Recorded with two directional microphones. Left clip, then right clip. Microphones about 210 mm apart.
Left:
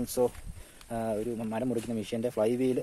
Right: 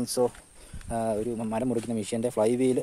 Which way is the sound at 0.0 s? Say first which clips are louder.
Right 2 dB; 20° right (ahead or behind).